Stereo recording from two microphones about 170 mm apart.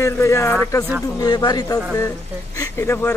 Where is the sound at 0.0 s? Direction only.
15° left (ahead or behind).